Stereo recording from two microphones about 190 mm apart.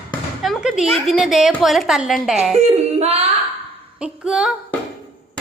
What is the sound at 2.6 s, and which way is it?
Speech, 35° right (ahead or behind).